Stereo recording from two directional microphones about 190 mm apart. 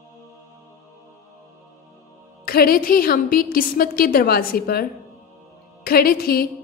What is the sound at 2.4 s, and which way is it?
A woman's voice, 50° left (ahead or behind).